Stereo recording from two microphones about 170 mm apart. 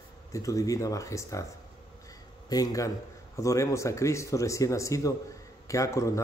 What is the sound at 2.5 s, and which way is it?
A man's voice, 20° left (ahead or behind).